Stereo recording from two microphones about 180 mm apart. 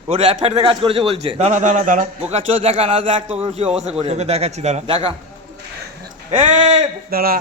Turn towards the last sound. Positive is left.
turn(degrees=-55)  # may be behind; listen again after turning